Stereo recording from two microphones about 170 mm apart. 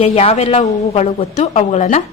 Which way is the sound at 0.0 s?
35° left (ahead or behind).